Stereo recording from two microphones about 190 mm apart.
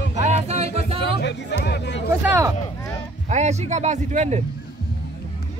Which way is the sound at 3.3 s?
35° right (ahead or behind).